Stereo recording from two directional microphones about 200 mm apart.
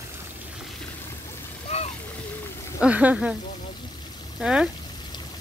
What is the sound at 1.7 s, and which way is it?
Vehicle, 35° left (ahead or behind).